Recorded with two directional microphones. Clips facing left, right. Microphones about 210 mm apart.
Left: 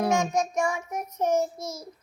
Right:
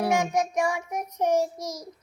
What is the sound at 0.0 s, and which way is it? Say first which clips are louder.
A child's voice: even; 10° right (ahead or behind).